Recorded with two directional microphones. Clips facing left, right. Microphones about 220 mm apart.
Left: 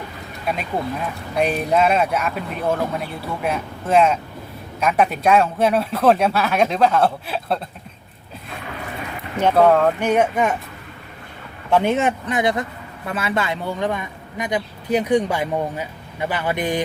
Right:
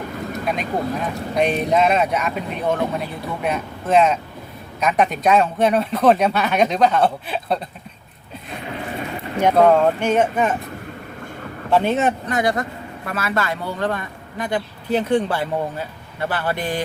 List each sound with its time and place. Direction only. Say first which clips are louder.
0.4 s speech: even; centre (ahead or behind)
9.6 s speech: even; centre (ahead or behind)
11.7 s speech: even; 15° left (ahead or behind)